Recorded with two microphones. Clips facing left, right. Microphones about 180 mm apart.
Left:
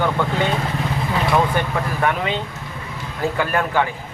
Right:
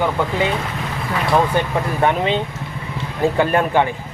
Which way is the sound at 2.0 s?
25° right (ahead or behind).